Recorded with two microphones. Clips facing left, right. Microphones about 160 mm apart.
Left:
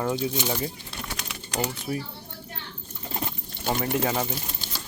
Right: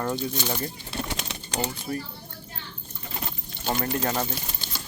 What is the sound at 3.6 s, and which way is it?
Speech, 10° left (ahead or behind).